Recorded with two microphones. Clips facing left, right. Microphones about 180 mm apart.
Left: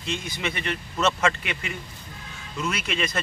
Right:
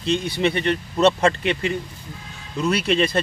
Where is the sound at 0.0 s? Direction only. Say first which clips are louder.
Right 9 dB; 35° right (ahead or behind).